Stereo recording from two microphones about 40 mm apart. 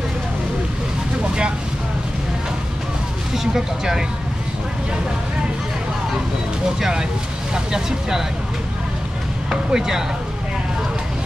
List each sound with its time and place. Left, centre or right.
3.3 s speech: centre
6.8 s speech: centre
9.7 s speech: centre